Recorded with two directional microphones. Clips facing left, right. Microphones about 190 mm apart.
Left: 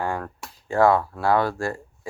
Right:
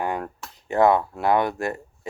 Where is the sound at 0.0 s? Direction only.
20° right (ahead or behind).